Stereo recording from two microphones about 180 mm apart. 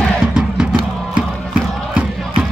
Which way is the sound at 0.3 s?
5° right (ahead or behind).